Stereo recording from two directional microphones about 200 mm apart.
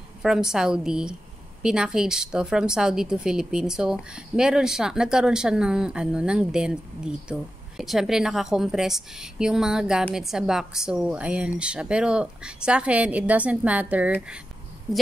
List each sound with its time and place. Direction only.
0.2 s speech: 5° right (ahead or behind)